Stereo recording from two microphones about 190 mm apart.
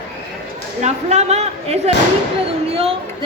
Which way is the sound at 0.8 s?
35° right (ahead or behind).